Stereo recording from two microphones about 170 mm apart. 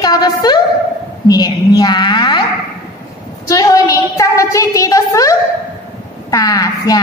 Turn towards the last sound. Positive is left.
turn(degrees=20)  # may be behind; listen again after turning